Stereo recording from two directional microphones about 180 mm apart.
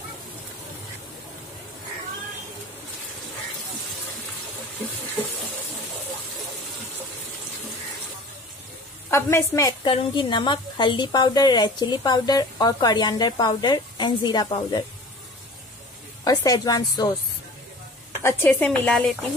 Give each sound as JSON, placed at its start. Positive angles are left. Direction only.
{"t": 9.1, "sound": "a woman's voice", "side_deg": 15}
{"t": 9.8, "sound": "a woman's voice", "side_deg": 30}
{"t": 16.3, "sound": "a woman's voice", "side_deg": 20}
{"t": 18.2, "sound": "a woman's voice", "side_deg": 10}